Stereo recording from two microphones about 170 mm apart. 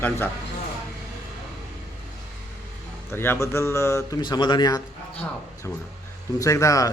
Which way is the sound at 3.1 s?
15° left (ahead or behind).